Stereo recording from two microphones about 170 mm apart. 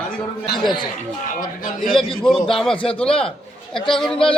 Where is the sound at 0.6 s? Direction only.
25° left (ahead or behind).